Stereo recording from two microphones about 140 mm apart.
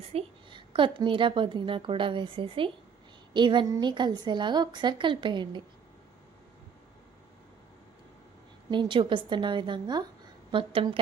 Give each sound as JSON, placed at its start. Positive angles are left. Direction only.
{"t": 0.0, "sound": "a woman's voice", "side_deg": -45}
{"t": 8.7, "sound": "a woman's voice", "side_deg": -35}